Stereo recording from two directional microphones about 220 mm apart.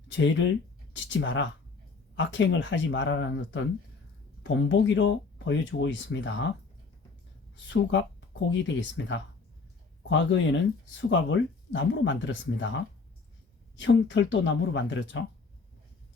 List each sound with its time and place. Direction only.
0.2 s speech: 55° left (ahead or behind)
7.5 s speech: 55° left (ahead or behind)